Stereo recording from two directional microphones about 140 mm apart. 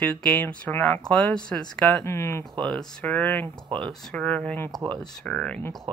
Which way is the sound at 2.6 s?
5° left (ahead or behind).